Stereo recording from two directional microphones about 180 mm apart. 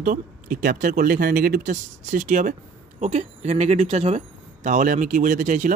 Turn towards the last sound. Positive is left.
turn(degrees=-45)  # may be behind; listen again after turning